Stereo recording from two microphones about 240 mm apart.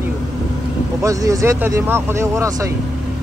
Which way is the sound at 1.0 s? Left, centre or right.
Centre.